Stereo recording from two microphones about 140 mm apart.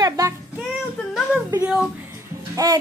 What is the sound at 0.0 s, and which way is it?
Music, 25° right (ahead or behind).